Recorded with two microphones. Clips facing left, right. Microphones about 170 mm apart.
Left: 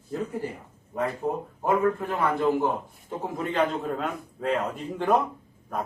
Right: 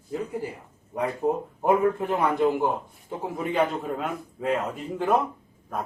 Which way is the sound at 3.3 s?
5° right (ahead or behind).